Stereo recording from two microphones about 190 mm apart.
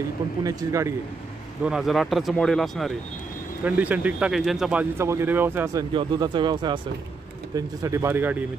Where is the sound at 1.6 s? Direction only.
5° right (ahead or behind).